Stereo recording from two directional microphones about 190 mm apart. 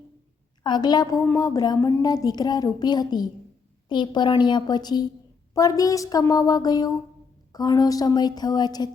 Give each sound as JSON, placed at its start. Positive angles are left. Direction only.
{"t": 0.6, "sound": "a woman's voice", "side_deg": 20}